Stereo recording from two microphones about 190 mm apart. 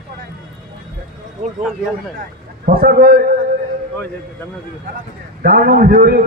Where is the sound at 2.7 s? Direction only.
50° right (ahead or behind).